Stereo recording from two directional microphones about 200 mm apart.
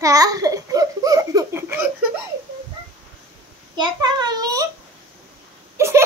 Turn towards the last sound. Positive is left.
turn(degrees=-15)  # may be behind; listen again after turning